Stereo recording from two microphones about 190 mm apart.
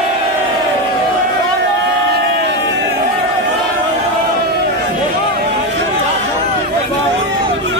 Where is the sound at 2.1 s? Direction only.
65° right (ahead or behind).